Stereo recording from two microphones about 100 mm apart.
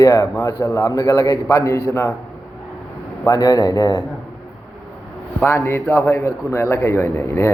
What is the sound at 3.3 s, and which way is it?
Speech, 40° left (ahead or behind).